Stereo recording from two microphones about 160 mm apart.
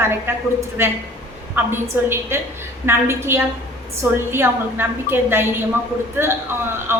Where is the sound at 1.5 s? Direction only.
15° right (ahead or behind).